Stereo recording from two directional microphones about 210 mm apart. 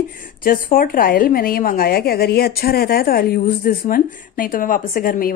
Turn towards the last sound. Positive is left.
turn(degrees=45)  # may be behind; listen again after turning